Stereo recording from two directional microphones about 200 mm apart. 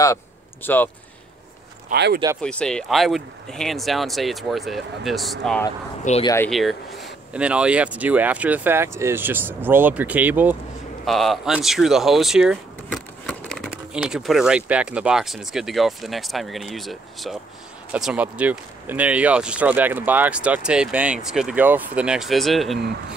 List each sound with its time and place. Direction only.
0.0 s a sound: 10° left (ahead or behind)
1.9 s speech: 55° right (ahead or behind)
2.4 s speech: 5° left (ahead or behind)
6.2 s speech: 15° left (ahead or behind)
6.5 s speech: centre (ahead or behind)